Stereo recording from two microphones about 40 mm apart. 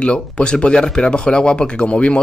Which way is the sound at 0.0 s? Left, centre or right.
Left.